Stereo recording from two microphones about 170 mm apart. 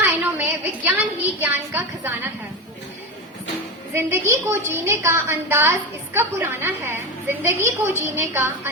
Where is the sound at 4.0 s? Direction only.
15° right (ahead or behind).